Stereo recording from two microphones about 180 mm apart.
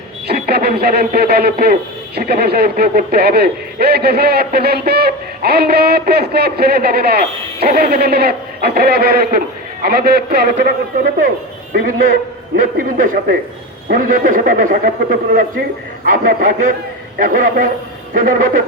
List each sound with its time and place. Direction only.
0.3 s a man's voice: 60° right (ahead or behind)